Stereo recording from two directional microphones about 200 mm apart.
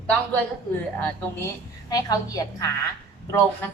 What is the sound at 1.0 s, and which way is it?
A woman's voice, 10° left (ahead or behind).